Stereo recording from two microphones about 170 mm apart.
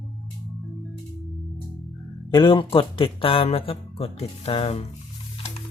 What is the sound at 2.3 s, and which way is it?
Speech, 30° left (ahead or behind).